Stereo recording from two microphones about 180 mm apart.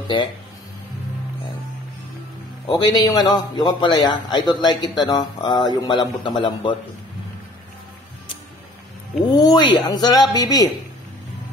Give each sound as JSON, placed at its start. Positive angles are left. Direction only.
{"t": 2.6, "sound": "a man's voice", "side_deg": 20}
{"t": 9.3, "sound": "a man's voice", "side_deg": 20}